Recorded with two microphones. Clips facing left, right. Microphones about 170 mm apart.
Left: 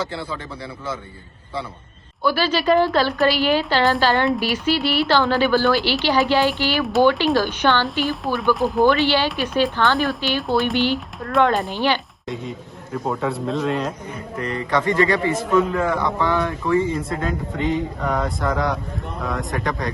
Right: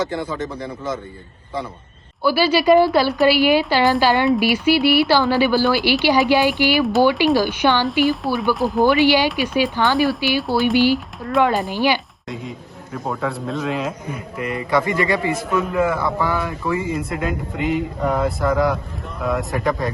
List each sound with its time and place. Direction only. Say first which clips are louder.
2.2 s a man's voice: right 3 dB; 10° right (ahead or behind)
6.8 s a man's voice: left 1 dB; 5° right (ahead or behind)
8.0 s speech: right 2 dB; centre (ahead or behind)
8.8 s a man's voice: right 4 dB; 15° right (ahead or behind)
10.0 s a man's voice: right 4 dB; centre (ahead or behind)